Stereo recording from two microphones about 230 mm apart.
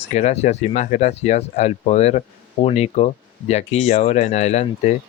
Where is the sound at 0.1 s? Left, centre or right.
Left.